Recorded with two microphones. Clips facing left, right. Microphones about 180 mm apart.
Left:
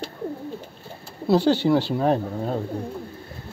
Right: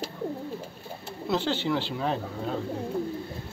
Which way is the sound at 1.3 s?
40° left (ahead or behind).